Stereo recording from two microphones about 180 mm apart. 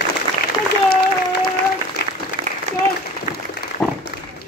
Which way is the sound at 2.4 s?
25° right (ahead or behind).